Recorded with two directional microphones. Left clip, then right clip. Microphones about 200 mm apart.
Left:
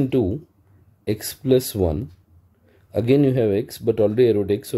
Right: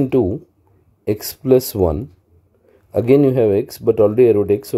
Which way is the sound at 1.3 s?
15° right (ahead or behind).